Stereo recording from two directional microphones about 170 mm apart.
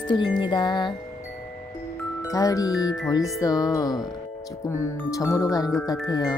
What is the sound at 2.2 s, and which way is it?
Speech, 20° left (ahead or behind).